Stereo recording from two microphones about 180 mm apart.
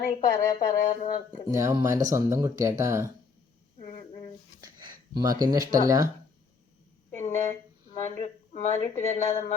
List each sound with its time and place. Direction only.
0.3 s speech: 45° left (ahead or behind)
1.5 s speech: 20° right (ahead or behind)
4.6 s speech: 25° right (ahead or behind)
7.2 s a woman's voice: 40° left (ahead or behind)